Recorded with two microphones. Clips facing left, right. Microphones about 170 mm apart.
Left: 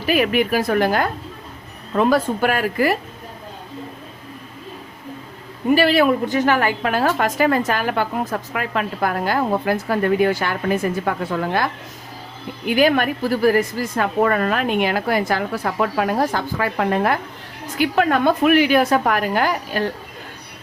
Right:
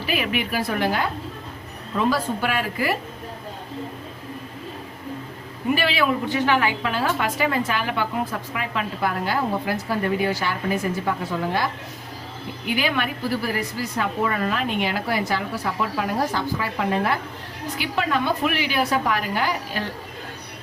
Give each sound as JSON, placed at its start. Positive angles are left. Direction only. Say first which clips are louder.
{"t": 0.0, "sound": "a woman's voice", "louder": "left 7 dB", "side_deg": 45}
{"t": 5.7, "sound": "a woman's voice", "louder": "left 7 dB", "side_deg": 45}
{"t": 12.6, "sound": "a woman's voice", "louder": "left 8 dB", "side_deg": 45}